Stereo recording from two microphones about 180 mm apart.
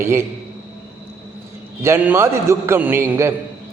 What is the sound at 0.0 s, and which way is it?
Speech, 15° right (ahead or behind).